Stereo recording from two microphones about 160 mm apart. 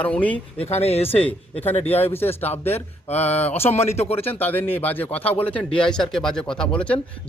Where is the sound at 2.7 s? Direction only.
40° left (ahead or behind).